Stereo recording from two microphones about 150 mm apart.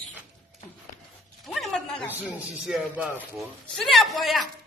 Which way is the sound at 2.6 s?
5° right (ahead or behind).